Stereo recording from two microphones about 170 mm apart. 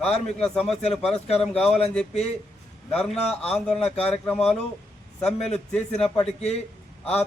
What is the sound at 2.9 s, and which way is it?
Speech, 5° left (ahead or behind).